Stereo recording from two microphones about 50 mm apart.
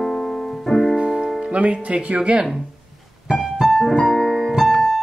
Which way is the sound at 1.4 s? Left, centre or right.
Right.